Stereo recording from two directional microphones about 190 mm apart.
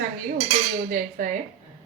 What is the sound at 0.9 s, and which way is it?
Speech, 45° right (ahead or behind).